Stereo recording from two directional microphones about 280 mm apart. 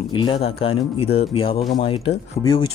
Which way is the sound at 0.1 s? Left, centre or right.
Centre.